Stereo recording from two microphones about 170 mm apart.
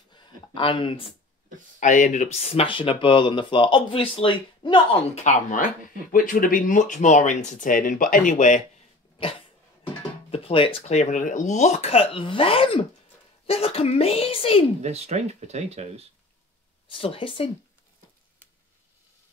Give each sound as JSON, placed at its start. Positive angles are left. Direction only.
{"t": 0.1, "sound": "a sound", "side_deg": 30}
{"t": 1.8, "sound": "speech", "side_deg": 45}
{"t": 5.2, "sound": "speech", "side_deg": 45}
{"t": 10.3, "sound": "speech", "side_deg": 30}
{"t": 14.8, "sound": "speech", "side_deg": -40}
{"t": 17.0, "sound": "speech", "side_deg": 30}